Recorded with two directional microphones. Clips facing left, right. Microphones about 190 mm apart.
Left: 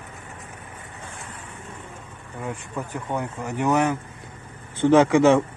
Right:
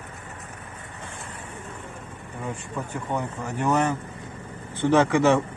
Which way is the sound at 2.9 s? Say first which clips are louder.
Even; 10° left (ahead or behind).